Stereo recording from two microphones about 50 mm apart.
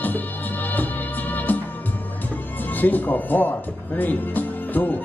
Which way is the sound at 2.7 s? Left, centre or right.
Left.